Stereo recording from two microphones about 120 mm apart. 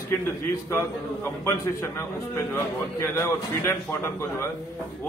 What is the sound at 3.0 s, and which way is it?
Speech, 25° left (ahead or behind).